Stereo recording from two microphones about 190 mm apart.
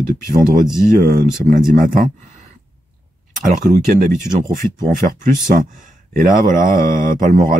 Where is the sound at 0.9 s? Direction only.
45° right (ahead or behind).